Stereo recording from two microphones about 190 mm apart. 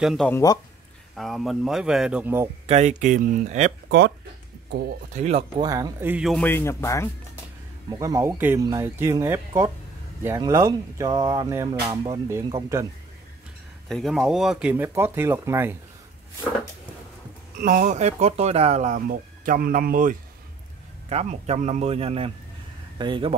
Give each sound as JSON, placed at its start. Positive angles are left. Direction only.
{"t": 0.0, "sound": "speech", "side_deg": 0}
{"t": 0.3, "sound": "a man's voice", "side_deg": 15}
{"t": 1.1, "sound": "speech", "side_deg": 0}
{"t": 2.6, "sound": "speech", "side_deg": -35}
{"t": 5.1, "sound": "speech", "side_deg": -35}
{"t": 5.6, "sound": "speech", "side_deg": -20}
{"t": 6.4, "sound": "a man's voice", "side_deg": 15}
{"t": 7.9, "sound": "speech", "side_deg": -15}
{"t": 13.8, "sound": "speech", "side_deg": 0}
{"t": 17.6, "sound": "speech", "side_deg": -45}
{"t": 21.1, "sound": "speech", "side_deg": -35}